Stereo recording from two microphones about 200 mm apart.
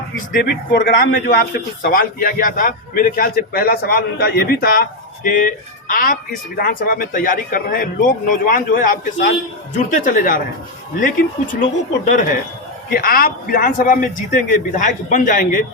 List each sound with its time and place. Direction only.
0.3 s a man's voice: 50° left (ahead or behind)
11.6 s a man's voice: 40° left (ahead or behind)